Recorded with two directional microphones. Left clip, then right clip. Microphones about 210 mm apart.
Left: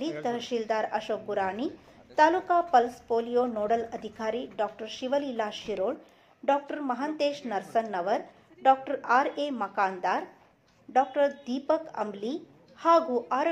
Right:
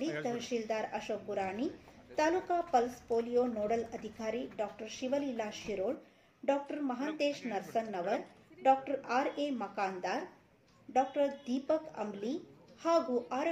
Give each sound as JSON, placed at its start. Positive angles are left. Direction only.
{"t": 0.1, "sound": "a woman's voice", "side_deg": 10}
{"t": 3.1, "sound": "a woman's voice", "side_deg": 15}